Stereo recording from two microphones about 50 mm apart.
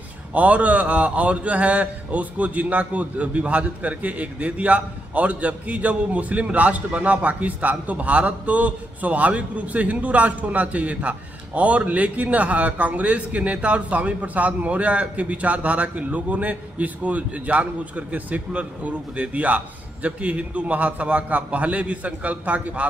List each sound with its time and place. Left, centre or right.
0.3 s speech: right